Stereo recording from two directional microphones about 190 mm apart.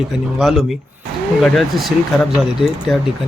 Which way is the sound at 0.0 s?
Centre (ahead or behind).